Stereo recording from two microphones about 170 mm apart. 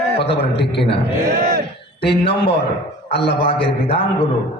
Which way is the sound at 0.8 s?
80° left.